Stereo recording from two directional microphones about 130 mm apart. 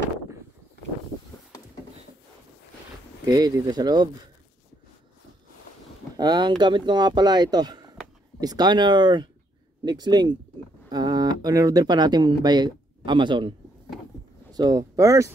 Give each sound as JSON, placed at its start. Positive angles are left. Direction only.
{"t": 3.3, "sound": "speech", "side_deg": -30}
{"t": 6.1, "sound": "speech", "side_deg": -35}